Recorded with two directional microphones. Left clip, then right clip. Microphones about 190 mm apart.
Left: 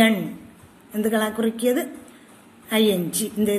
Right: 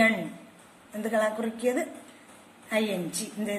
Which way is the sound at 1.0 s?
40° left (ahead or behind).